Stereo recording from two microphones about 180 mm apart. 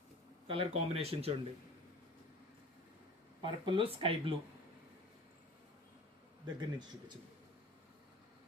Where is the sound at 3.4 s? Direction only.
25° right (ahead or behind).